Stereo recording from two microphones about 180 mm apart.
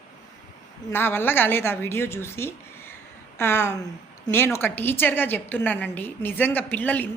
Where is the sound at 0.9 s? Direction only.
10° left (ahead or behind).